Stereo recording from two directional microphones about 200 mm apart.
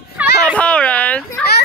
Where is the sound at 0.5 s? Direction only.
5° left (ahead or behind).